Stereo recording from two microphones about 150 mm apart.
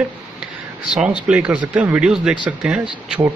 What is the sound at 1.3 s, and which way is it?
Speech, 10° right (ahead or behind).